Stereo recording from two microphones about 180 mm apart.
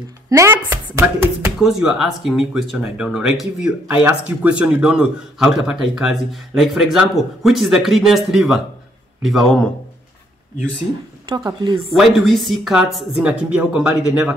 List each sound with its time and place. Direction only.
0.3 s speech: 15° right (ahead or behind)
1.6 s a man's voice: 5° right (ahead or behind)
11.2 s a woman's voice: 25° right (ahead or behind)
11.9 s a man's voice: centre (ahead or behind)